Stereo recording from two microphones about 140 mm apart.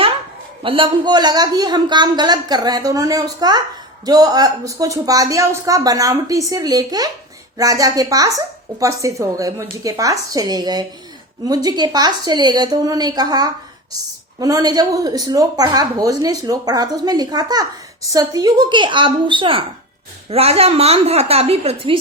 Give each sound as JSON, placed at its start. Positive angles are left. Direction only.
{"t": 0.6, "sound": "a woman's voice", "side_deg": -40}